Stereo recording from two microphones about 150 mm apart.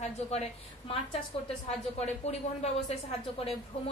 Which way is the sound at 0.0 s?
45° left (ahead or behind).